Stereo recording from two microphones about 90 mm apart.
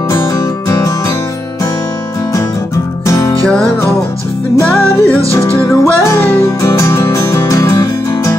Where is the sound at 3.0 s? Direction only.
35° left (ahead or behind).